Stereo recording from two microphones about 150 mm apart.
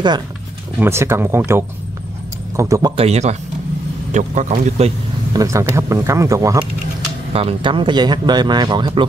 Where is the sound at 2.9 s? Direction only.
45° right (ahead or behind).